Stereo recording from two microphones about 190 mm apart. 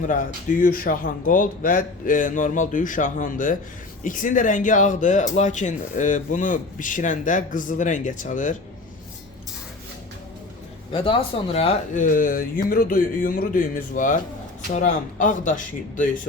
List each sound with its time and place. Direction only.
0.1 s a man's voice: 45° left (ahead or behind)
10.9 s a man's voice: 30° left (ahead or behind)